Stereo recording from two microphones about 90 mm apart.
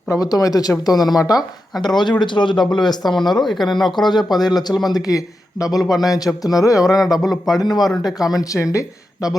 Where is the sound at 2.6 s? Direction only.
5° left (ahead or behind).